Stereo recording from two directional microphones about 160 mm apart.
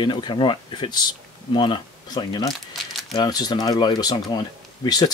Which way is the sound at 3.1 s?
25° left (ahead or behind).